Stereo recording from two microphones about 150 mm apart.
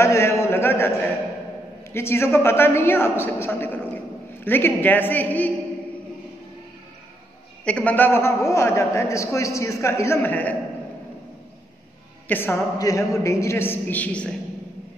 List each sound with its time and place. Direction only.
0.0 s a sound: 20° left (ahead or behind)
1.9 s a man's voice: 15° left (ahead or behind)
7.6 s a man's voice: 10° left (ahead or behind)
12.3 s a man's voice: 15° left (ahead or behind)